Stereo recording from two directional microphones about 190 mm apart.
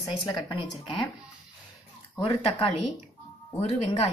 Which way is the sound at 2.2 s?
25° left (ahead or behind).